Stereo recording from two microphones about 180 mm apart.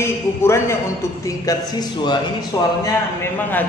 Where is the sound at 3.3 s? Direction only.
10° left (ahead or behind).